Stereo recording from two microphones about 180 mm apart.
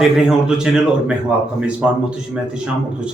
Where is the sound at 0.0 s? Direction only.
5° right (ahead or behind).